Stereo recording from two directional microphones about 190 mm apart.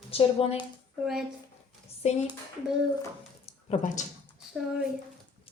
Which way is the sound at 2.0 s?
35° left (ahead or behind).